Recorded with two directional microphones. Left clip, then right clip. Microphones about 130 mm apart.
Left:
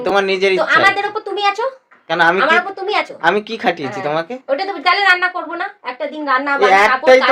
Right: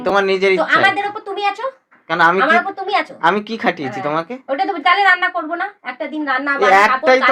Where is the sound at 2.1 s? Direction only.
10° left (ahead or behind).